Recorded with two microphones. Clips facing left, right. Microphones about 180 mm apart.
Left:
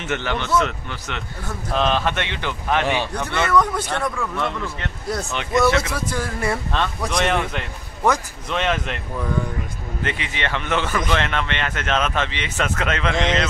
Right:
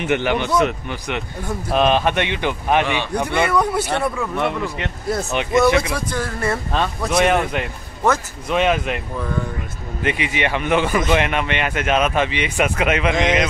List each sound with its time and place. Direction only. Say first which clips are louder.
0.0 s speech: right 6 dB; 15° right (ahead or behind)
5.9 s speech: right 1 dB; 10° left (ahead or behind)
7.1 s speech: right 6 dB; 10° right (ahead or behind)
10.0 s speech: right 6 dB; 15° right (ahead or behind)